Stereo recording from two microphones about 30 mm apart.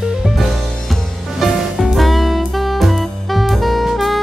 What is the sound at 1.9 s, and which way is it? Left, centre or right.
Saxophone, centre.